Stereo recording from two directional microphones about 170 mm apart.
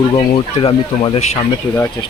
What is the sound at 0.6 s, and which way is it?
Speech, 35° left (ahead or behind).